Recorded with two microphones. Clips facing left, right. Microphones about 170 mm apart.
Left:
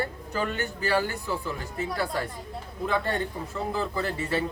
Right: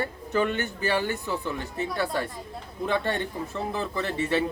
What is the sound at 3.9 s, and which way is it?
Speech, 25° right (ahead or behind).